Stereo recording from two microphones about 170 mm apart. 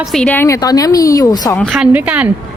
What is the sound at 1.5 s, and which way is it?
Speech, centre (ahead or behind).